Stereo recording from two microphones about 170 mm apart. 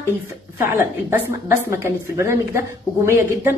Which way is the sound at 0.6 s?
15° right (ahead or behind).